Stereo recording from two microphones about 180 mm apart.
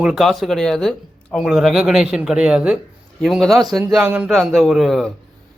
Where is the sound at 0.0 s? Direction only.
Centre (ahead or behind).